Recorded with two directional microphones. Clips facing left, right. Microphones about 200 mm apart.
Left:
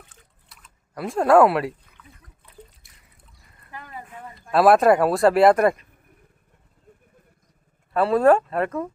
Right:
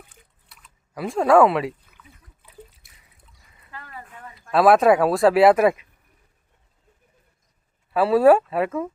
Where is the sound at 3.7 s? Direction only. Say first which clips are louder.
Left 2 dB; 15° left (ahead or behind).